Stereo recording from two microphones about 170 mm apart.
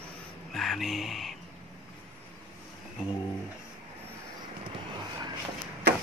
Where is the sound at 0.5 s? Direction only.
Centre (ahead or behind).